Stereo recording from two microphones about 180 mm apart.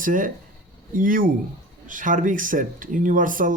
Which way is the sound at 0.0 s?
50° right (ahead or behind).